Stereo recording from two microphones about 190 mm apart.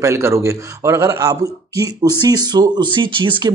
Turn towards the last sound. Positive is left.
turn(degrees=-25)  # may be behind; listen again after turning